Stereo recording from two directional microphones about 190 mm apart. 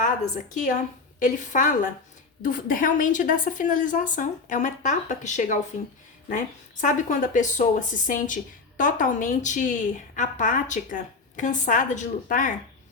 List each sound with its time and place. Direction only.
0.5 s a woman's voice: 40° left (ahead or behind)
6.8 s a woman's voice: 40° left (ahead or behind)